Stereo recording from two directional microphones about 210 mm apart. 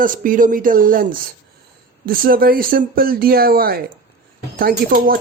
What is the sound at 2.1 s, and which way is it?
Speech, 45° right (ahead or behind).